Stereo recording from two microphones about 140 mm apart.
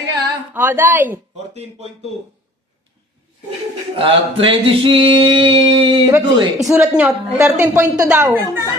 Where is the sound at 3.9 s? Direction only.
40° right (ahead or behind).